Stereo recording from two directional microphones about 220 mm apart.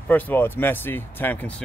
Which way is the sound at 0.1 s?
10° left (ahead or behind).